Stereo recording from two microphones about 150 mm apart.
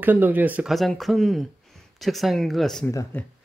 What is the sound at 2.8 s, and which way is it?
Speech, 15° left (ahead or behind).